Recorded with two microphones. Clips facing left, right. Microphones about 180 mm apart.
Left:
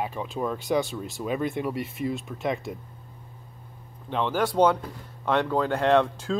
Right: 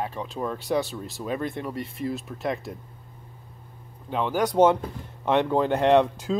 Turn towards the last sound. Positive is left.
turn(degrees=-15)  # may be behind; listen again after turning